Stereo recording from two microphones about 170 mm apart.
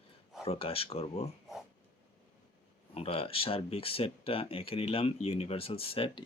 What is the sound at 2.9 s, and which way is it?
Speech, 35° left (ahead or behind).